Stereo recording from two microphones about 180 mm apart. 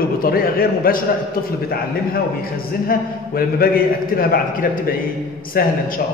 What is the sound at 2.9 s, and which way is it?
A man's voice, 55° left (ahead or behind).